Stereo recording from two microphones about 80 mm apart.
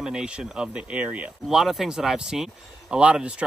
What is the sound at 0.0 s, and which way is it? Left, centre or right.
Speech, centre.